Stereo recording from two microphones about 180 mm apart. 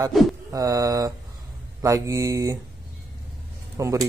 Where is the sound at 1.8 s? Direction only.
15° right (ahead or behind).